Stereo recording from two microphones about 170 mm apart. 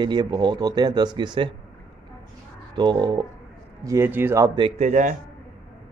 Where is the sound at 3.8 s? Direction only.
15° right (ahead or behind).